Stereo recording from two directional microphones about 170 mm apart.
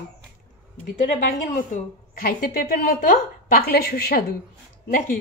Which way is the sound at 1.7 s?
55° left (ahead or behind).